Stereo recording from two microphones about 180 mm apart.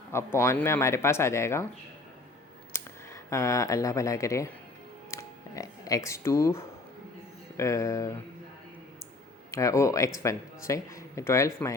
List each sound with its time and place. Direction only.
0.1 s speech: 15° left (ahead or behind)
2.7 s clicking: 15° left (ahead or behind)
3.2 s speech: 15° left (ahead or behind)
9.5 s speech: 15° left (ahead or behind)